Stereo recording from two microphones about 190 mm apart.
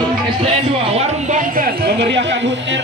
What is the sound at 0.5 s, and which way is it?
Speech, 35° right (ahead or behind).